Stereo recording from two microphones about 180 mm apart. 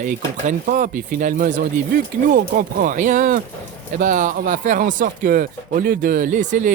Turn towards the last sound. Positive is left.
turn(degrees=-45)  # may be behind; listen again after turning